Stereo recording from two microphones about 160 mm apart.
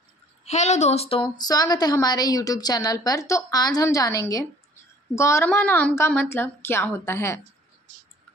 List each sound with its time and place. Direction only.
0.5 s a woman's voice: 45° left (ahead or behind); by 7.3 s 15° left (ahead or behind)